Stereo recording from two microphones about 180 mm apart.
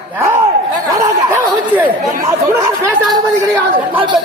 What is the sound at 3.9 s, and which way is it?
Speech, 25° right (ahead or behind).